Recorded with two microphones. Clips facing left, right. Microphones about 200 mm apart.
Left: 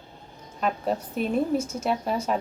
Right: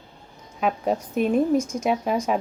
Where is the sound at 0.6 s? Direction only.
10° right (ahead or behind).